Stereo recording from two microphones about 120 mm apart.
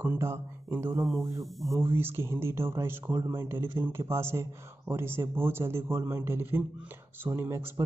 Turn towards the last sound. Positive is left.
turn(degrees=-25)  # may be behind; listen again after turning